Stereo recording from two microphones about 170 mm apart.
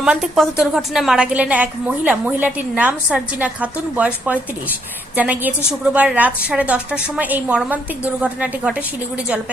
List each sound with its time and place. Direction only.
0.0 s a woman's voice: 5° right (ahead or behind)